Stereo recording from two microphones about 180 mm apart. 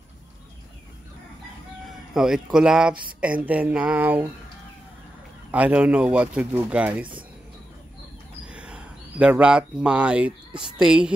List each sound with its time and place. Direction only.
2.1 s speech: 5° right (ahead or behind)
5.5 s speech: 5° right (ahead or behind)
8.5 s a woman's voice: 5° right (ahead or behind)